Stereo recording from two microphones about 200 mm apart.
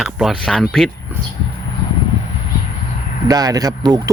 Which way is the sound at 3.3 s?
20° right (ahead or behind).